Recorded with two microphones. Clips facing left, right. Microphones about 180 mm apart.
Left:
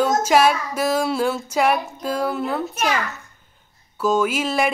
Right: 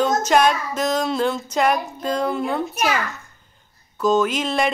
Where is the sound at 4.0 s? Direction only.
10° left (ahead or behind).